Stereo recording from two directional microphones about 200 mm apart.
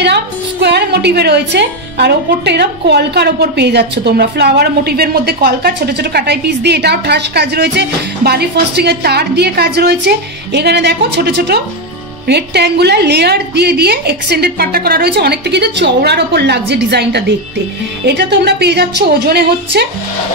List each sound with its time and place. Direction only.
0.0 s a woman's voice: 55° right (ahead or behind)